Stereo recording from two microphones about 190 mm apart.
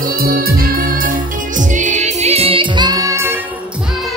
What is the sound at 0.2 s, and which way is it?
Music, 50° right (ahead or behind).